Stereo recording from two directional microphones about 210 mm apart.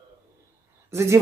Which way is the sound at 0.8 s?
10° right (ahead or behind).